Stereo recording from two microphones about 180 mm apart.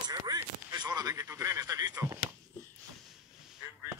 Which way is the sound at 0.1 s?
20° right (ahead or behind).